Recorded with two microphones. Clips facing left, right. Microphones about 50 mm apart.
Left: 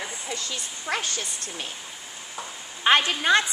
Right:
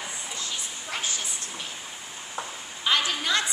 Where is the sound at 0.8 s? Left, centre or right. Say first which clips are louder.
Left 5 dB; left.